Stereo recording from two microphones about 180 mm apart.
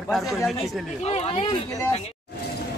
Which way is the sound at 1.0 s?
35° left (ahead or behind).